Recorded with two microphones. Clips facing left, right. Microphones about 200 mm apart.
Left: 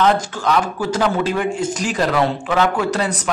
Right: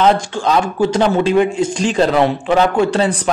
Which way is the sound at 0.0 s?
25° right (ahead or behind).